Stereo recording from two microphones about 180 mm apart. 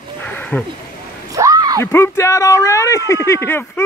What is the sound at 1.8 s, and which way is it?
Speech, 15° left (ahead or behind).